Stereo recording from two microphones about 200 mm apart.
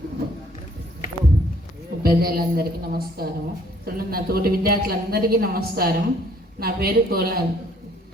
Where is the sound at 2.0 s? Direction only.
50° right (ahead or behind).